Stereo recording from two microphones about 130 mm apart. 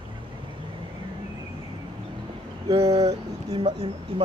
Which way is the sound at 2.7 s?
50° right (ahead or behind).